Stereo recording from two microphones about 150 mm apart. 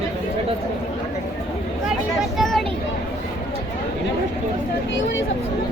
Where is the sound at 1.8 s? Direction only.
Centre (ahead or behind).